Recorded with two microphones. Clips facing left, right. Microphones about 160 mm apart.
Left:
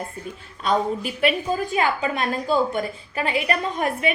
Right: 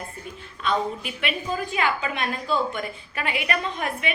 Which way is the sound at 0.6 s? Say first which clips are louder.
Left 3 dB; 40° left (ahead or behind).